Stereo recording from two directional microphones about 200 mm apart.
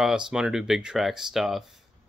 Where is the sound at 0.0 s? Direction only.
5° right (ahead or behind).